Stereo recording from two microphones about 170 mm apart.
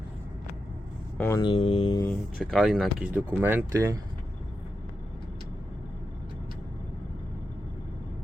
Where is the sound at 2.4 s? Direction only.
Centre (ahead or behind); by 4.0 s 20° right (ahead or behind).